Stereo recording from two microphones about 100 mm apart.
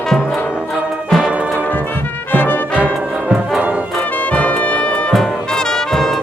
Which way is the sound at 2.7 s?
15° right (ahead or behind).